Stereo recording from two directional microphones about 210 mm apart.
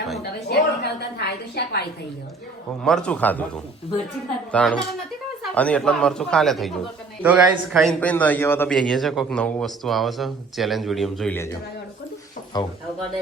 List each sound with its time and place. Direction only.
0.2 s a woman's voice: 50° left (ahead or behind)
2.8 s a man's voice: 5° left (ahead or behind)
4.5 s a man's voice: 5° left (ahead or behind)
12.5 s speech: 20° left (ahead or behind)